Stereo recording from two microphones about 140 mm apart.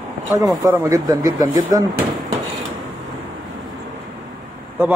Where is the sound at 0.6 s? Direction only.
25° right (ahead or behind).